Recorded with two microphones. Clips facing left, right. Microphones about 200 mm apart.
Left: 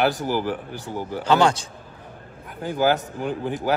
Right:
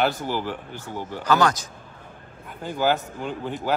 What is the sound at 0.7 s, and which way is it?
Speech, 15° left (ahead or behind).